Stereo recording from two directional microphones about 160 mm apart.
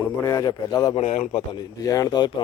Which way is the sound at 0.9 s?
45° left (ahead or behind).